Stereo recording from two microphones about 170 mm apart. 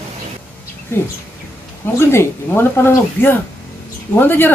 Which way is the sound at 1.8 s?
15° left (ahead or behind).